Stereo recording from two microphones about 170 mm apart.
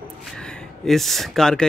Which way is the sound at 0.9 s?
Centre (ahead or behind).